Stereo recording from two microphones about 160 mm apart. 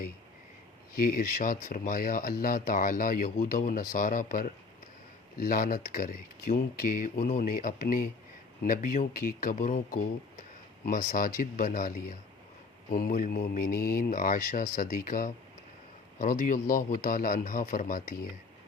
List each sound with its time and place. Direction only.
0.9 s speech: 60° left (ahead or behind)